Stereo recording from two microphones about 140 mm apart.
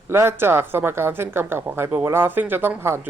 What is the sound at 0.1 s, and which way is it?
Speech, 15° right (ahead or behind).